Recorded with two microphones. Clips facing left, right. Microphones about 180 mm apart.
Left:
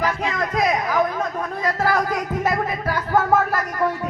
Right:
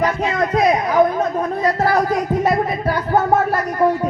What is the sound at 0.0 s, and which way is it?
Chatter, 35° right (ahead or behind).